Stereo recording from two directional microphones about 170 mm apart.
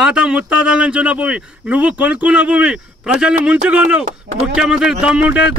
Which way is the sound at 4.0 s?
40° right (ahead or behind).